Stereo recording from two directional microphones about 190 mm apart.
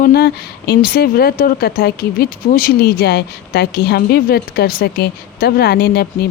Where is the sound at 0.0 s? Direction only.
55° left (ahead or behind).